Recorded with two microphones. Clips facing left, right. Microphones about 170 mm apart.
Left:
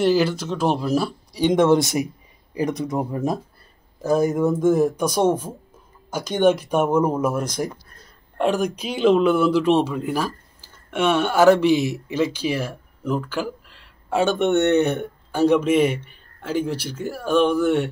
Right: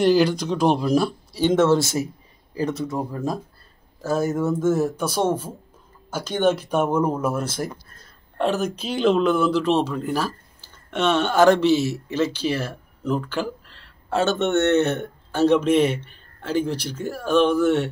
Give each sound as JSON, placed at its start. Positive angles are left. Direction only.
{"t": 0.0, "sound": "speech", "side_deg": 5}
{"t": 6.0, "sound": "speech", "side_deg": 10}